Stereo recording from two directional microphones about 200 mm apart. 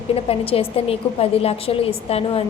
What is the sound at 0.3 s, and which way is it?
A woman's voice, 30° left (ahead or behind).